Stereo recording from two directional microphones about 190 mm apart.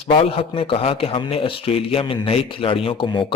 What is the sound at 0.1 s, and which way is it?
Speech, 30° left (ahead or behind).